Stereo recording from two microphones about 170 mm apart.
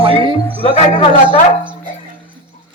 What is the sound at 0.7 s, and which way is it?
Speech, 35° left (ahead or behind).